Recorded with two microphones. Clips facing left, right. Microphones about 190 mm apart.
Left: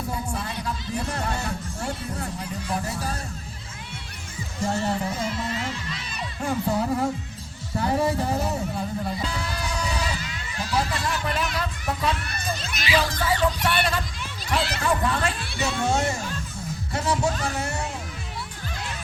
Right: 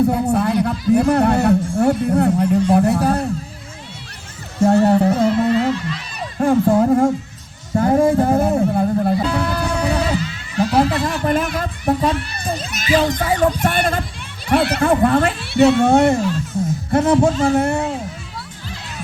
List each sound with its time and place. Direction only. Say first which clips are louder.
0.1 s speech: right 14 dB; 65° right (ahead or behind)
4.6 s music: right 13 dB; 60° right (ahead or behind)
6.4 s speech: right 11 dB; 50° right (ahead or behind)
7.8 s music: right 9 dB; 50° right (ahead or behind)
10.6 s a sound: right 11 dB; 55° right (ahead or behind)
12.4 s crowd: right 6 dB; 50° right (ahead or behind)
13.1 s a sound: right 6 dB; 50° right (ahead or behind)
15.5 s speech: right 15 dB; 60° right (ahead or behind)